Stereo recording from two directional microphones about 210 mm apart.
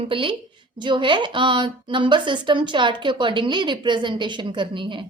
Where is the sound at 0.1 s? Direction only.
25° right (ahead or behind).